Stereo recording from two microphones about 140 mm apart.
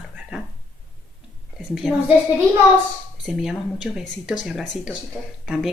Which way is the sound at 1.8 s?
5° right (ahead or behind).